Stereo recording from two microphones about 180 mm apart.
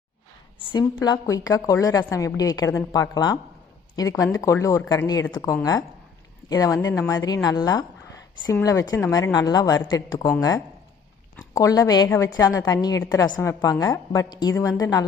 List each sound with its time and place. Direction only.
0.6 s a woman's voice: 25° left (ahead or behind)
11.3 s a woman's voice: 20° left (ahead or behind)